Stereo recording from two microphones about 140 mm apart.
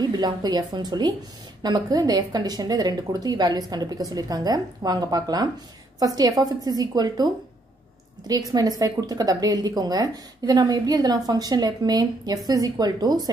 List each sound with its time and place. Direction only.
0.0 s a woman's voice: 30° right (ahead or behind)
8.3 s a woman's voice: 25° right (ahead or behind)